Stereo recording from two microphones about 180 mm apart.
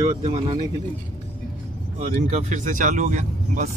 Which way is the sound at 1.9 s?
40° right (ahead or behind).